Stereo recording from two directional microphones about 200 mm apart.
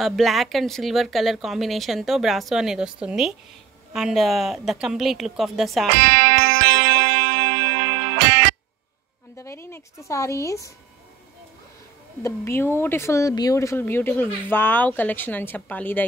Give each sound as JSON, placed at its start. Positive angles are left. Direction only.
{"t": 0.0, "sound": "a woman's voice", "side_deg": 0}
{"t": 5.9, "sound": "music", "side_deg": -55}
{"t": 9.4, "sound": "speech", "side_deg": 15}
{"t": 12.2, "sound": "speech", "side_deg": 15}